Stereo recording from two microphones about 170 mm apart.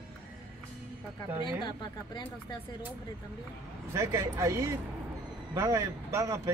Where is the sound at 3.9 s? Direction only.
15° right (ahead or behind).